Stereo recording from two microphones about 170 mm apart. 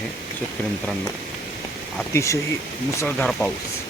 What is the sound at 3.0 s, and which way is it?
Speech, 5° left (ahead or behind).